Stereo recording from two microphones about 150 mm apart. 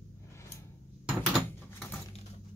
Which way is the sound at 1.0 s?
5° right (ahead or behind).